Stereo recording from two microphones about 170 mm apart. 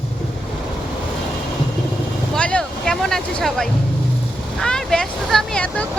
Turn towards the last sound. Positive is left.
turn(degrees=5)  # may be behind; listen again after turning